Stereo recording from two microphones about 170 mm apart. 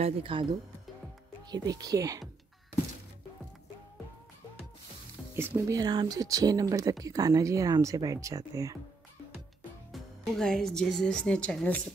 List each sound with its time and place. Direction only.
0.0 s speech: 30° right (ahead or behind)
1.5 s speech: 25° right (ahead or behind)
5.3 s speech: 15° right (ahead or behind)
10.3 s speech: 5° left (ahead or behind)